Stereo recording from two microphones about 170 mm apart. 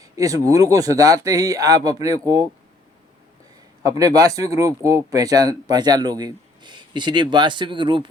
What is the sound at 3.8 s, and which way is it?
Speech, 20° right (ahead or behind).